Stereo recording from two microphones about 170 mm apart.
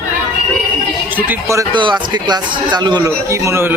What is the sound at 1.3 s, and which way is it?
A man's voice, 15° right (ahead or behind).